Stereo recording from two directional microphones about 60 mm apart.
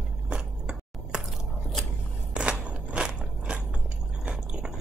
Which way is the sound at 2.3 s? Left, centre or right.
Centre.